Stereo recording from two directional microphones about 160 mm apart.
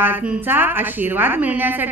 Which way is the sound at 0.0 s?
10° right (ahead or behind).